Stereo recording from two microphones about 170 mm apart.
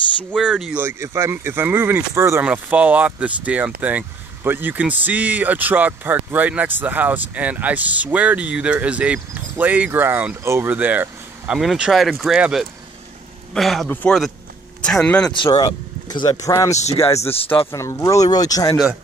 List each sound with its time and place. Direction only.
0.4 s a man's voice: 5° right (ahead or behind)
15.3 s speech: 30° left (ahead or behind)
16.7 s speech: 40° left (ahead or behind)
17.5 s speech: 15° left (ahead or behind)